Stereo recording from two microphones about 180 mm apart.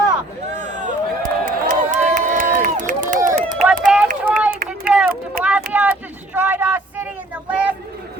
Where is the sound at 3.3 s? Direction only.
40° right (ahead or behind).